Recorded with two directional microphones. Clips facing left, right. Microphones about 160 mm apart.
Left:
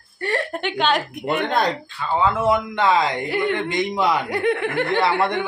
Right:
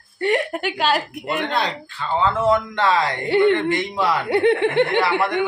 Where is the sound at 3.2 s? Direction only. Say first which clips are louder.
Right 6 dB; 30° right (ahead or behind).